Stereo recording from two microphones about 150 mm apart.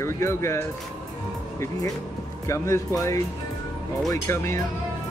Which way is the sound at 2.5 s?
20° left (ahead or behind).